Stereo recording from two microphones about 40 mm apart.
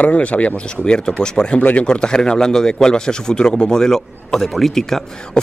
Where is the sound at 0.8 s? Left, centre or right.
Left.